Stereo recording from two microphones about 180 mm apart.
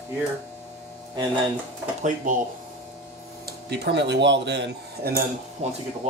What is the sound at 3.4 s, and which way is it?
Speech, 65° right (ahead or behind).